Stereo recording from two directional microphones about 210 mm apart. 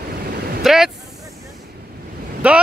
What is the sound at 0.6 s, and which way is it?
Vehicle, centre (ahead or behind).